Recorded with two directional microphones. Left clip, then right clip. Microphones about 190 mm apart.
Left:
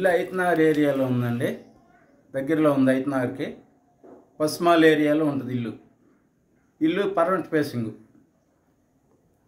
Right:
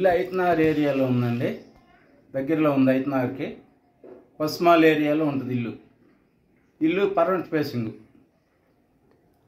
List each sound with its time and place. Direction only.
0.0 s speech: 10° left (ahead or behind)
1.1 s speech: 5° left (ahead or behind)
6.8 s speech: 5° left (ahead or behind)